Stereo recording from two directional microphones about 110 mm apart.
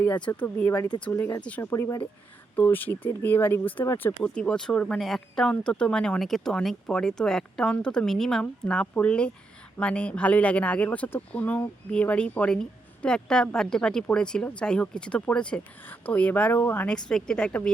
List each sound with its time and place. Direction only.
0.3 s speech: 20° left (ahead or behind)
1.7 s speech: 25° left (ahead or behind); by 17.7 s 10° left (ahead or behind)